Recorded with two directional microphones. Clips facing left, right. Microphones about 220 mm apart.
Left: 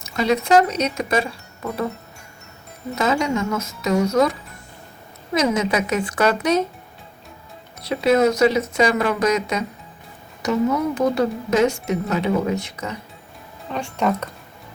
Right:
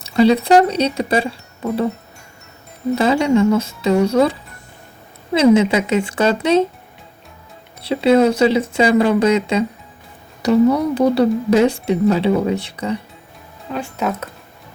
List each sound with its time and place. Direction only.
0.0 s speech: 30° right (ahead or behind)
2.9 s speech: 30° right (ahead or behind)
7.8 s speech: 30° right (ahead or behind)
13.7 s speech: 5° right (ahead or behind)